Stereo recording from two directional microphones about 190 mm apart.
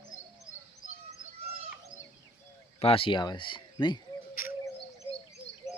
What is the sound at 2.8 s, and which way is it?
Speech, 30° left (ahead or behind).